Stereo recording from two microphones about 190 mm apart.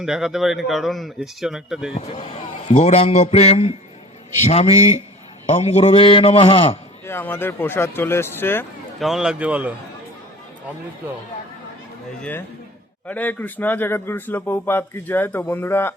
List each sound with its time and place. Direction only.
0.0 s speech: 5° right (ahead or behind)
2.0 s a man's voice: 35° left (ahead or behind)
5.5 s a man's voice: 35° left (ahead or behind)
7.0 s speech: 10° left (ahead or behind)
9.0 s speech: centre (ahead or behind)
13.1 s speech: 10° left (ahead or behind)